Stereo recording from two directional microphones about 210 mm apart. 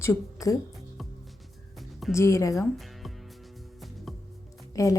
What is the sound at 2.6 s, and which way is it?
Music, centre (ahead or behind).